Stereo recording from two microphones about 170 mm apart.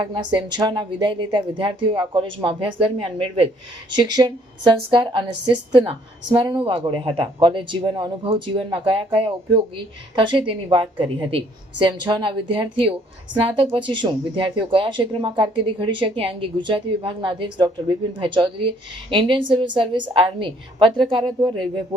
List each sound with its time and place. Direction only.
0.0 s a woman's voice: 25° right (ahead or behind)